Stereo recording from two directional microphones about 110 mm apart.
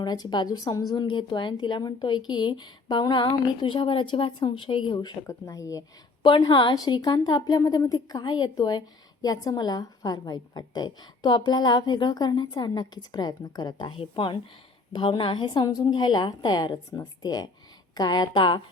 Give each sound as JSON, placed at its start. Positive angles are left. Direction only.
{"t": 0.0, "sound": "a woman's voice", "side_deg": 40}
{"t": 1.0, "sound": "speech", "side_deg": 45}
{"t": 5.2, "sound": "a woman's voice", "side_deg": 30}
{"t": 6.2, "sound": "speech", "side_deg": 45}
{"t": 7.6, "sound": "a woman's voice", "side_deg": 30}
{"t": 14.0, "sound": "a woman's voice", "side_deg": 55}